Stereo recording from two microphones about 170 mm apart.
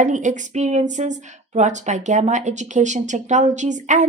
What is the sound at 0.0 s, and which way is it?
A woman's voice, 45° right (ahead or behind).